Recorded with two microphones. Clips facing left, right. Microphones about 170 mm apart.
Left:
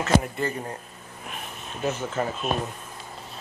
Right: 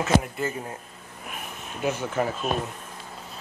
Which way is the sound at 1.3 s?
10° right (ahead or behind).